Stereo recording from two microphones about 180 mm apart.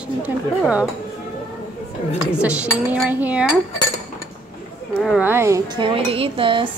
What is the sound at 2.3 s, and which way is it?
Dishes, 5° right (ahead or behind).